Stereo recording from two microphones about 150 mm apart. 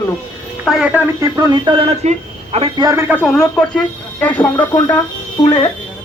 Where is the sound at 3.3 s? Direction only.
5° left (ahead or behind).